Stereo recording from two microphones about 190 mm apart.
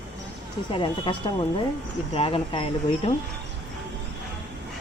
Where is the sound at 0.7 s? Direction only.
25° left (ahead or behind).